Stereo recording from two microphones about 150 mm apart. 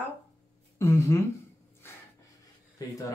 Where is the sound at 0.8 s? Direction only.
20° left (ahead or behind).